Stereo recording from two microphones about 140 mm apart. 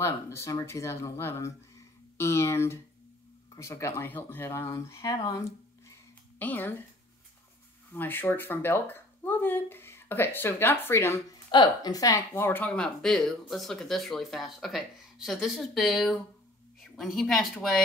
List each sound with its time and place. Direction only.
0.0 s speech: 20° left (ahead or behind)
6.4 s speech: 15° left (ahead or behind)
7.9 s speech: 15° left (ahead or behind)
11.5 s speech: 30° left (ahead or behind); by 17.8 s centre (ahead or behind)